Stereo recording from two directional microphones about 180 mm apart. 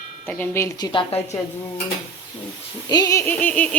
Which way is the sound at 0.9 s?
30° left (ahead or behind).